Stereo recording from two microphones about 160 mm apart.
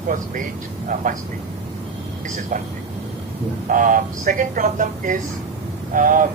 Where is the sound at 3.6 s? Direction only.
55° right (ahead or behind).